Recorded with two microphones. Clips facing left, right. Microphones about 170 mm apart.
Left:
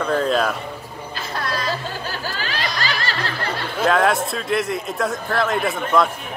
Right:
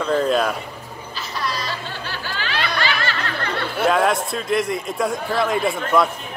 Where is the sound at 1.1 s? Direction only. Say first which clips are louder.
Left 1 dB; 55° left (ahead or behind); by 3.5 s 35° left (ahead or behind).